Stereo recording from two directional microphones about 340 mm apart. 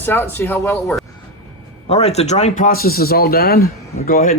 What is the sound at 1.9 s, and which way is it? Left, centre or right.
Speech, centre.